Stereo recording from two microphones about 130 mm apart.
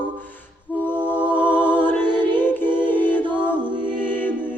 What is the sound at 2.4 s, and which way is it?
Music, 15° left (ahead or behind).